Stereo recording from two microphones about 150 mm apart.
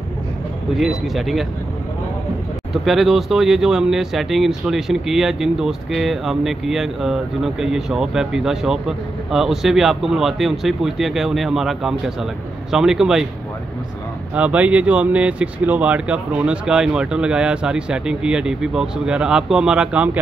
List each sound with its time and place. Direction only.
0.7 s speech: centre (ahead or behind)
2.8 s speech: centre (ahead or behind)
14.3 s speech: 10° right (ahead or behind)